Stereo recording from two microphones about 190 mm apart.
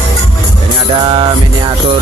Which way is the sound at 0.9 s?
25° right (ahead or behind).